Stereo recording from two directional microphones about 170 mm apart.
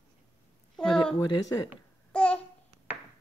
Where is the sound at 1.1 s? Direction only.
25° left (ahead or behind).